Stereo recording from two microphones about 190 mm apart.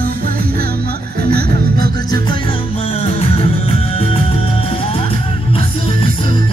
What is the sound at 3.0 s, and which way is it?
Music, 30° left (ahead or behind).